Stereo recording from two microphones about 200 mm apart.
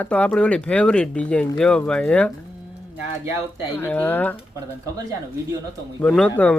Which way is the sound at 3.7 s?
10° left (ahead or behind).